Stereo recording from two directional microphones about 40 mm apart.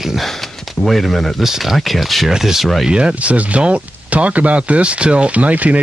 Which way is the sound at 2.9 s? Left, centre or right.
Right.